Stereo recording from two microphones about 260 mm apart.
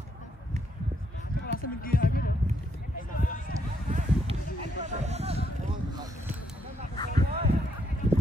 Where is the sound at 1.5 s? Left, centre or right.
Left.